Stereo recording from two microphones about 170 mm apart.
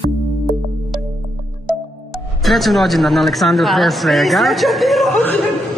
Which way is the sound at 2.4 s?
Centre (ahead or behind).